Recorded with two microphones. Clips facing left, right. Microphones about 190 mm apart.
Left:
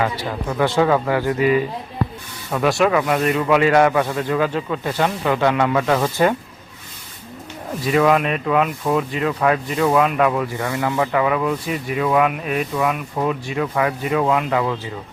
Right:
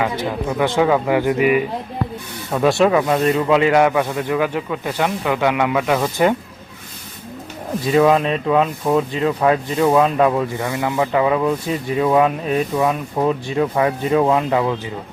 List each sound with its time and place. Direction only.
0.0 s speech: 20° right (ahead or behind)
7.9 s speech: 25° right (ahead or behind)